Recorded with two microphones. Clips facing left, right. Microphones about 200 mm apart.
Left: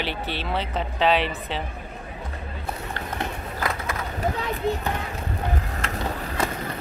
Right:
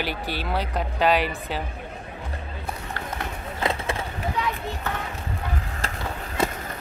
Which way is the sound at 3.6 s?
30° right (ahead or behind).